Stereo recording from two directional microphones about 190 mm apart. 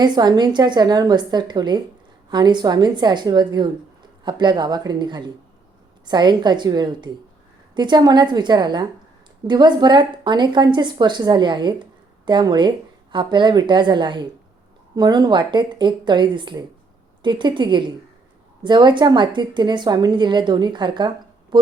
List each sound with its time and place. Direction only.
0.0 s a woman's voice: 20° right (ahead or behind)